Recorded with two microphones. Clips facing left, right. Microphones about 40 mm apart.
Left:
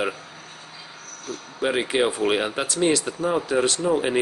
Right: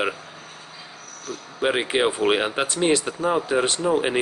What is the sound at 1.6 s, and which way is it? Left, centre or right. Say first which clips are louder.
Speech: right 1 dB; right.